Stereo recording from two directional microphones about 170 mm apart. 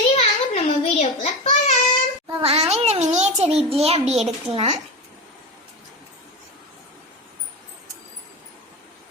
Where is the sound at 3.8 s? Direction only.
35° right (ahead or behind).